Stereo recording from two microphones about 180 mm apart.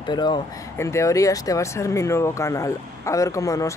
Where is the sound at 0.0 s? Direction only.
25° left (ahead or behind).